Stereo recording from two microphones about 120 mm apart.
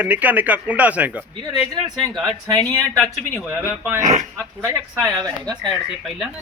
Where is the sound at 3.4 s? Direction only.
20° right (ahead or behind).